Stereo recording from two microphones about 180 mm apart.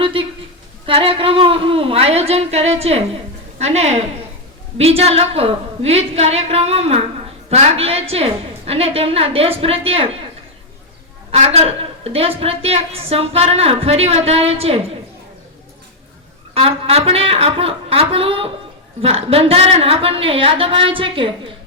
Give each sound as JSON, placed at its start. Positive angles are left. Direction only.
{"t": 0.0, "sound": "a sound", "side_deg": -30}
{"t": 0.9, "sound": "a woman's voice", "side_deg": -30}
{"t": 11.3, "sound": "a woman's voice", "side_deg": -35}
{"t": 16.6, "sound": "a woman's voice", "side_deg": -35}